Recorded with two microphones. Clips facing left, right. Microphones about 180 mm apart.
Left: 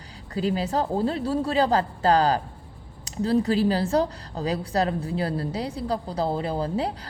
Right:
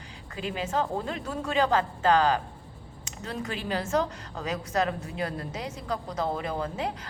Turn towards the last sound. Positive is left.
turn(degrees=35)  # may be behind; listen again after turning